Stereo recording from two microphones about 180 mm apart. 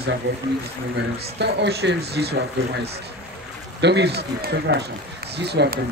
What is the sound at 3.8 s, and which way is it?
Speech, 70° right (ahead or behind).